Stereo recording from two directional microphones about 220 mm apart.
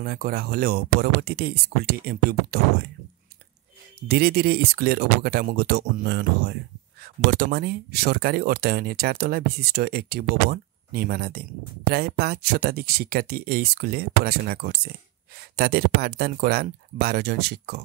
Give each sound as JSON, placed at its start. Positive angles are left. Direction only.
{"t": 0.0, "sound": "speech", "side_deg": -45}
{"t": 4.1, "sound": "speech", "side_deg": -45}